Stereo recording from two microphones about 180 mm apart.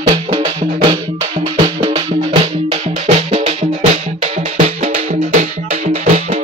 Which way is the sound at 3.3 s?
35° right (ahead or behind).